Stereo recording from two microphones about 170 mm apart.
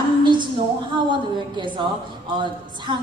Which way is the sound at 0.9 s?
30° right (ahead or behind).